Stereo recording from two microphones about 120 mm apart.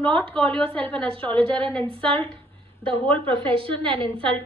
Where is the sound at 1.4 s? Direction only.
45° right (ahead or behind).